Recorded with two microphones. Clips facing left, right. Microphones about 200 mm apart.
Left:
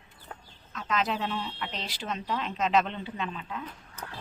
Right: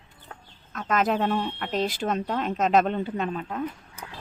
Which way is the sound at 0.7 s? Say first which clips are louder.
Right 6 dB; 50° right (ahead or behind).